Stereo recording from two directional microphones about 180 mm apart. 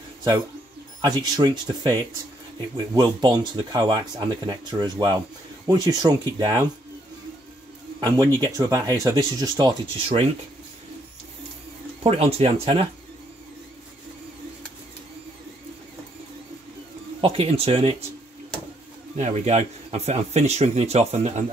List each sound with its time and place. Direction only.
1.0 s speech: 25° right (ahead or behind)
8.0 s speech: 20° right (ahead or behind)
12.0 s speech: 35° right (ahead or behind)
17.2 s speech: 30° right (ahead or behind)
19.1 s speech: 40° right (ahead or behind)